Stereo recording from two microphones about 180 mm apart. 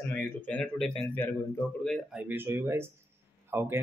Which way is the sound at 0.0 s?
10° left (ahead or behind).